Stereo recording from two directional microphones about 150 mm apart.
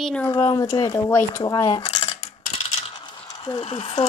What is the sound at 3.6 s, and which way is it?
Speech, 40° left (ahead or behind).